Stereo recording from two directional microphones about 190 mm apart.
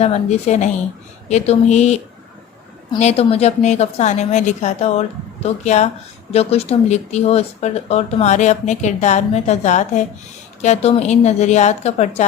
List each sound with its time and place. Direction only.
0.0 s speech: 35° left (ahead or behind)
3.0 s speech: 35° left (ahead or behind)